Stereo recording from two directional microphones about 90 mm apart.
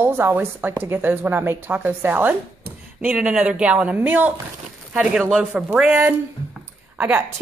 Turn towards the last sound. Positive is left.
turn(degrees=-20)  # may be behind; listen again after turning